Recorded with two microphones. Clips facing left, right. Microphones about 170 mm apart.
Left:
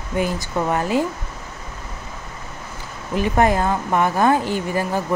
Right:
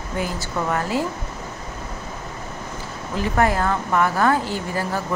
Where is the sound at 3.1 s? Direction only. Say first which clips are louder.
Left 3 dB; 20° left (ahead or behind).